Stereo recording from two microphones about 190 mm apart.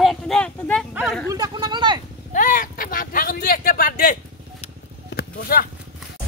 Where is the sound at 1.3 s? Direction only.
20° right (ahead or behind).